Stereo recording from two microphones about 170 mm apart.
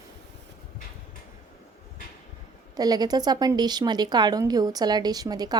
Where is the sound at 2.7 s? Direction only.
20° right (ahead or behind).